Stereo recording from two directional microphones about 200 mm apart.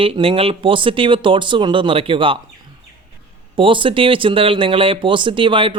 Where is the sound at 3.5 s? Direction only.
25° right (ahead or behind).